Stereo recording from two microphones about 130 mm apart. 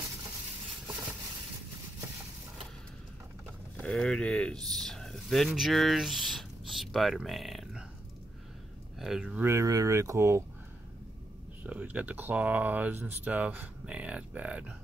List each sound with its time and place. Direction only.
3.7 s speech: 5° left (ahead or behind)
8.9 s speech: 5° right (ahead or behind)
9.4 s speech: 20° right (ahead or behind)
11.6 s speech: 10° right (ahead or behind)